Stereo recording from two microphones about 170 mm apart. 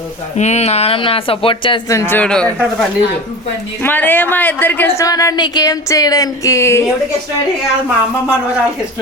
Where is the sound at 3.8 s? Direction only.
10° left (ahead or behind).